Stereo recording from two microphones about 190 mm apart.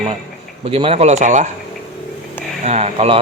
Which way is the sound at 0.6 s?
30° right (ahead or behind).